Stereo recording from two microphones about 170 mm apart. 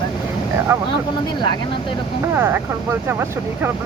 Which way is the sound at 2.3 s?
10° right (ahead or behind).